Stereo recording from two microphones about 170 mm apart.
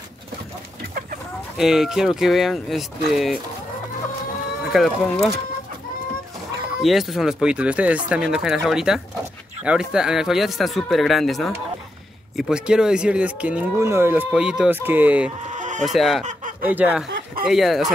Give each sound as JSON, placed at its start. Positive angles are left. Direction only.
{"t": 1.6, "sound": "speech", "side_deg": 0}
{"t": 4.7, "sound": "speech", "side_deg": 0}
{"t": 6.8, "sound": "speech", "side_deg": 0}
{"t": 15.5, "sound": "chicken", "side_deg": -45}
{"t": 15.8, "sound": "speech", "side_deg": 0}